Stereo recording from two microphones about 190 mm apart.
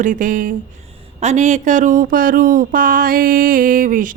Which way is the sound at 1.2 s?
40° right (ahead or behind).